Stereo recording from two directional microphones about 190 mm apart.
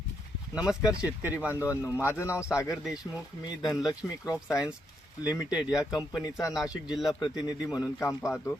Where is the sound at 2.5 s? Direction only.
5° right (ahead or behind).